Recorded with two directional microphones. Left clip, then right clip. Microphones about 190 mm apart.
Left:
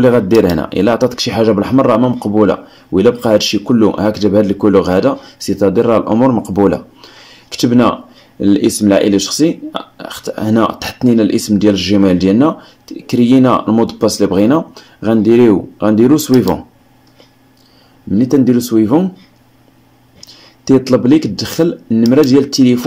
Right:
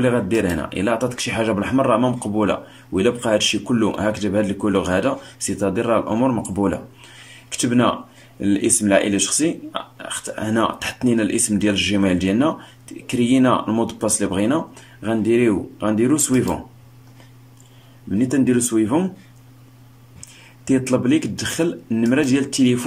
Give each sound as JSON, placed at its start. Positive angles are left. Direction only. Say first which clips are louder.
{"t": 0.4, "sound": "speech", "louder": "left 10 dB", "side_deg": 30}
{"t": 1.3, "sound": "speech", "louder": "left 8 dB", "side_deg": 25}
{"t": 3.9, "sound": "speech", "louder": "left 8 dB", "side_deg": 30}
{"t": 6.3, "sound": "speech", "louder": "left 9 dB", "side_deg": 30}
{"t": 7.6, "sound": "speech", "louder": "left 7 dB", "side_deg": 35}
{"t": 13.4, "sound": "speech", "louder": "left 7 dB", "side_deg": 25}
{"t": 18.1, "sound": "speech", "louder": "left 7 dB", "side_deg": 25}
{"t": 21.4, "sound": "speech", "louder": "left 7 dB", "side_deg": 25}